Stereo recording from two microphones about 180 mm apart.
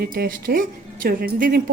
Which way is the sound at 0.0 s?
60° right (ahead or behind).